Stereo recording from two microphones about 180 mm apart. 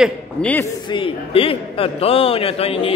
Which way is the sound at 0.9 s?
30° left (ahead or behind).